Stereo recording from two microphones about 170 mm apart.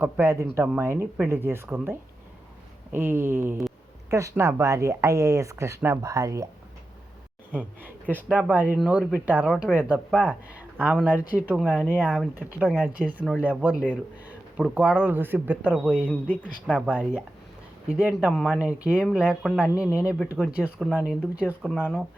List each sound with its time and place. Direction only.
0.0 s speech: 15° right (ahead or behind)
7.5 s speech: 10° right (ahead or behind)
16.0 s speech: 10° left (ahead or behind)
16.4 s speech: 5° right (ahead or behind)